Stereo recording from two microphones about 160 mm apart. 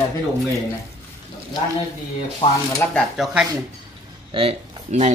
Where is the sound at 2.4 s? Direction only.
45° left (ahead or behind).